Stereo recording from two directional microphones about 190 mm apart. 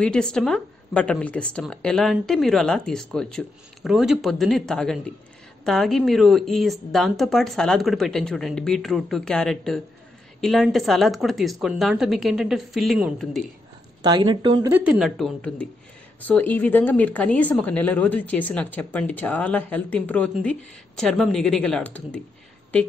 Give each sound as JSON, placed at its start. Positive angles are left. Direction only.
{"t": 0.0, "sound": "speech", "side_deg": 5}
{"t": 14.0, "sound": "speech", "side_deg": -20}
{"t": 14.7, "sound": "speech", "side_deg": -5}